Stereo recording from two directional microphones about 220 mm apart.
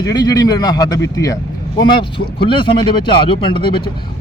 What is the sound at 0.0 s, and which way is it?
Speech, 20° left (ahead or behind).